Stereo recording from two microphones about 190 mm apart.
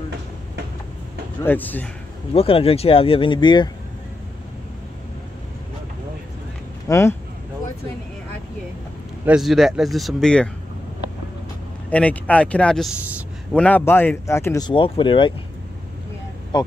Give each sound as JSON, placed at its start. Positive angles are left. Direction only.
{"t": 1.4, "sound": "speech", "side_deg": 10}
{"t": 2.3, "sound": "speech", "side_deg": 30}
{"t": 6.9, "sound": "speech", "side_deg": 15}
{"t": 9.2, "sound": "speech", "side_deg": -5}
{"t": 11.9, "sound": "speech", "side_deg": 5}